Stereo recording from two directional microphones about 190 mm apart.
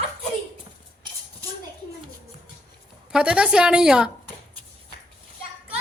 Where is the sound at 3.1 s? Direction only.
5° right (ahead or behind).